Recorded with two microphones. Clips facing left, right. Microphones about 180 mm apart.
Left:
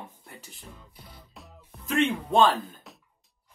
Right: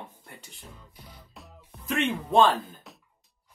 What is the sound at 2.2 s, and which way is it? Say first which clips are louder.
Speech: right 4 dB; centre (ahead or behind).